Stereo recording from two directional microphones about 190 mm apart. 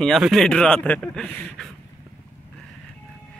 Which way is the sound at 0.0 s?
Centre (ahead or behind).